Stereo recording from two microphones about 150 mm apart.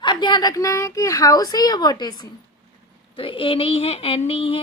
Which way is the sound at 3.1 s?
35° left (ahead or behind).